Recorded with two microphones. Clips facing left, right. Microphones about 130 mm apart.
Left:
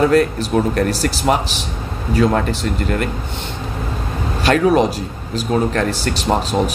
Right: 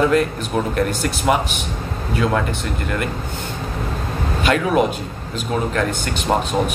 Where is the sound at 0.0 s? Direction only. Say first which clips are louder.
Left 3 dB; 40° left (ahead or behind).